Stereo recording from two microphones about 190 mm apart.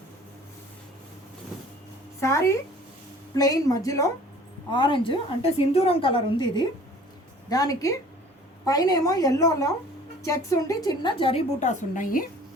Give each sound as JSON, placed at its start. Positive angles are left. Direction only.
{"t": 2.2, "sound": "a woman's voice", "side_deg": 15}